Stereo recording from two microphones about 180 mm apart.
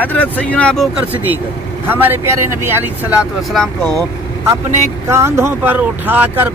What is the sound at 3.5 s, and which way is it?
Speech, centre (ahead or behind).